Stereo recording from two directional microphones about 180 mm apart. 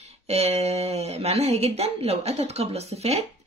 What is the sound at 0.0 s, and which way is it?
Speech, 35° right (ahead or behind).